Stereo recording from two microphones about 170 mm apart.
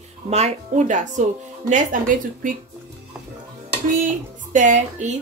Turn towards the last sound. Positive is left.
turn(degrees=-45)  # may be behind; listen again after turning